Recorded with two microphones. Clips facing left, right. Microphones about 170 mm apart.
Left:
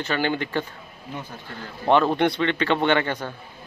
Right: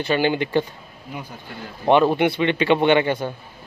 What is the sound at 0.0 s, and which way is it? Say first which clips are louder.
Speech: right 4 dB; 20° right (ahead or behind).